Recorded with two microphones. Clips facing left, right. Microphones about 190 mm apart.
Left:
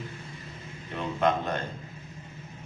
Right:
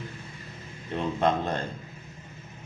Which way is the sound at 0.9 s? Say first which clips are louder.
Right 1 dB; 30° right (ahead or behind).